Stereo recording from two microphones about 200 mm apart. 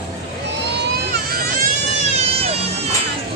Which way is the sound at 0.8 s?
50° right (ahead or behind).